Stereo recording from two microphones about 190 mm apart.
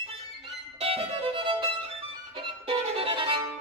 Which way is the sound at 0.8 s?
30° right (ahead or behind).